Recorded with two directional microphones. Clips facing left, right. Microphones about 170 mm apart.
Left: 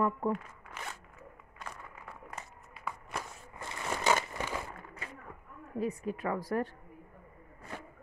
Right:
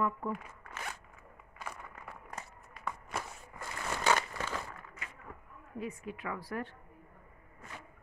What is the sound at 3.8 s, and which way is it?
Crumpling, 15° left (ahead or behind).